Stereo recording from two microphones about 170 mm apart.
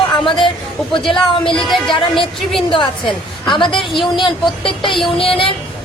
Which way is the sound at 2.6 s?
30° left (ahead or behind).